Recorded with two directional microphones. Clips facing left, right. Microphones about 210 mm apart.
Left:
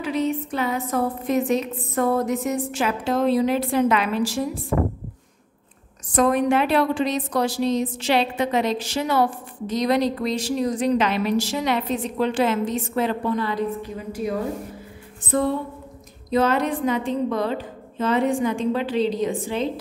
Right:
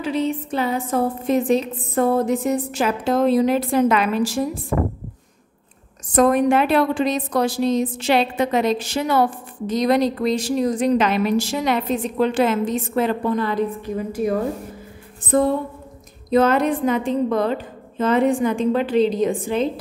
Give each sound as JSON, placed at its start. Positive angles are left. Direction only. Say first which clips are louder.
{"t": 0.0, "sound": "a woman's voice", "louder": "right 1 dB", "side_deg": -30}
{"t": 6.1, "sound": "a woman's voice", "louder": "right 3 dB", "side_deg": -45}
{"t": 16.3, "sound": "a woman's voice", "louder": "right 4 dB", "side_deg": -50}